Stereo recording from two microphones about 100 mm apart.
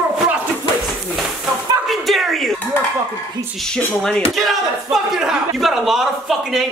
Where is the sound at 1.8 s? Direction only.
Centre (ahead or behind).